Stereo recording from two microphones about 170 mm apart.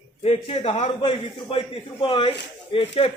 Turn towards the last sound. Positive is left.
turn(degrees=35)  # may be behind; listen again after turning